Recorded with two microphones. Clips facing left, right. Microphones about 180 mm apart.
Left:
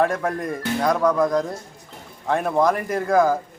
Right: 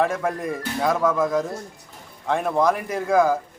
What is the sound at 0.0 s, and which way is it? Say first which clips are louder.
Speech: left 1 dB; centre (ahead or behind).